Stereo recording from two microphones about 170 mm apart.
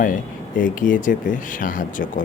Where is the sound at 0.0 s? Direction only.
50° left (ahead or behind).